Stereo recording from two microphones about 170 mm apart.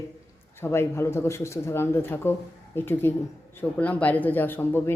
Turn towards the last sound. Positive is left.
turn(degrees=10)  # may be behind; listen again after turning